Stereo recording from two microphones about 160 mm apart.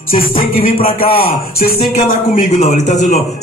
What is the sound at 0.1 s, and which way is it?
A man's voice, 60° left (ahead or behind).